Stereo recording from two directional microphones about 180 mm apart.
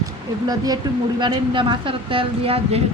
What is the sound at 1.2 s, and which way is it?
Speech, 25° right (ahead or behind).